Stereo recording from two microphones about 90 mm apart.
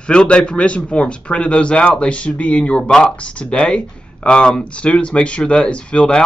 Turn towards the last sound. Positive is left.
turn(degrees=10)  # may be behind; listen again after turning